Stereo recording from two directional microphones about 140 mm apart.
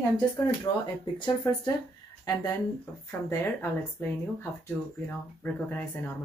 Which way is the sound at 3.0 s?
15° left (ahead or behind).